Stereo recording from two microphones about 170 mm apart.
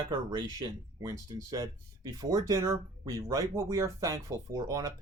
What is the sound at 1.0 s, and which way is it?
Speech, 20° right (ahead or behind).